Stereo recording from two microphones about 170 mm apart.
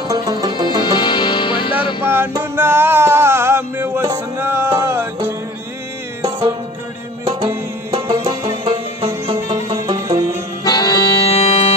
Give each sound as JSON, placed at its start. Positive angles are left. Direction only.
{"t": 0.1, "sound": "music", "side_deg": -25}
{"t": 0.8, "sound": "music", "side_deg": 25}
{"t": 2.0, "sound": "a sound", "side_deg": -15}
{"t": 7.2, "sound": "music", "side_deg": -20}
{"t": 9.0, "sound": "music", "side_deg": -35}
{"t": 9.6, "sound": "music", "side_deg": -20}
{"t": 10.6, "sound": "accordion", "side_deg": 25}